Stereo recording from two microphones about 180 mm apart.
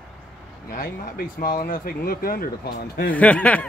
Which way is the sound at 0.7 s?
50° left (ahead or behind).